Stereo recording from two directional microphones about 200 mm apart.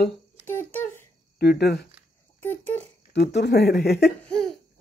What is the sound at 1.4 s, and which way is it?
Speech, 50° left (ahead or behind).